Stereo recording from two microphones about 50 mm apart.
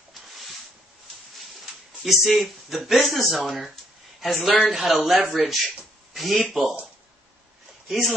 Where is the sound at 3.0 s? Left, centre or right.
Centre.